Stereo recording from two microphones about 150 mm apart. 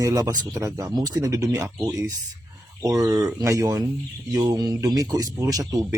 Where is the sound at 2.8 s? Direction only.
25° right (ahead or behind).